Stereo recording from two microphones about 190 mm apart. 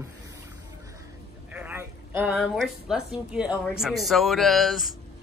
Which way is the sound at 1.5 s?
10° right (ahead or behind).